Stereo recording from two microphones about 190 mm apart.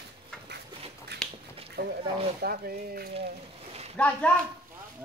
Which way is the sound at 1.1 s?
60° right (ahead or behind).